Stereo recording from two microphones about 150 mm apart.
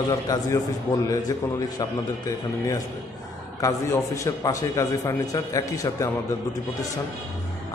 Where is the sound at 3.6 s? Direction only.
20° left (ahead or behind).